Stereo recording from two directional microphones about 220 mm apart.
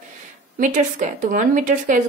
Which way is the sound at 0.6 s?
35° right (ahead or behind).